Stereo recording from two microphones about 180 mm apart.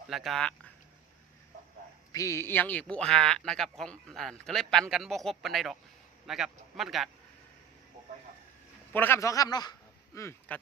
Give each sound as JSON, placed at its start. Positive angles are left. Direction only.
{"t": 0.1, "sound": "a man's voice", "side_deg": 0}
{"t": 2.1, "sound": "a man's voice", "side_deg": 15}
{"t": 8.9, "sound": "a man's voice", "side_deg": 10}